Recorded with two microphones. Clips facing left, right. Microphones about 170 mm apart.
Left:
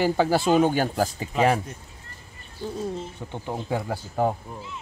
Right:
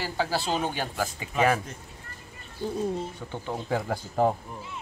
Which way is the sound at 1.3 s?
30° left (ahead or behind).